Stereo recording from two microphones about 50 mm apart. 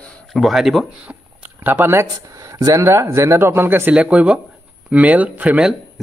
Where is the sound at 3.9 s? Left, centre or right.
Right.